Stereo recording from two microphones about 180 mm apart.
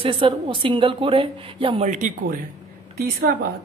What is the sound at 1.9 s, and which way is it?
A woman's voice, 45° right (ahead or behind).